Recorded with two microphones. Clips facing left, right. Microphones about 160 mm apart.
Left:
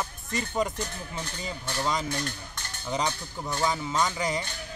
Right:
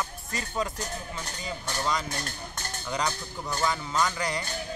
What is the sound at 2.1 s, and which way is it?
Speech, 40° right (ahead or behind).